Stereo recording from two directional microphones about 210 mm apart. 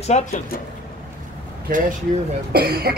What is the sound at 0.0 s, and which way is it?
Speech, 30° left (ahead or behind).